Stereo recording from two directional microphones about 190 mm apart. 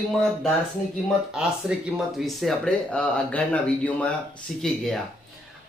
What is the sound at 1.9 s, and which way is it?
Speech, centre (ahead or behind).